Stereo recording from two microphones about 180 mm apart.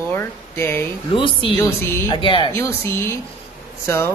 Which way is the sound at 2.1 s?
25° left (ahead or behind).